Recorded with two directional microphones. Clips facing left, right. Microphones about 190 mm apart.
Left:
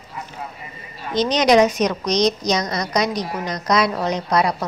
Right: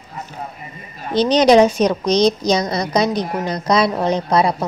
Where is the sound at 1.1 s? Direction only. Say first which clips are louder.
Right 4 dB; 30° right (ahead or behind).